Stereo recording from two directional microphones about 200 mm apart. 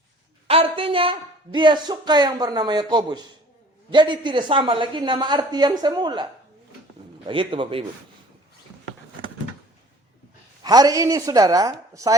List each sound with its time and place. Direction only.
0.4 s a woman's voice: 30° right (ahead or behind)
7.3 s a woman's voice: 25° right (ahead or behind)
10.6 s a woman's voice: 20° right (ahead or behind)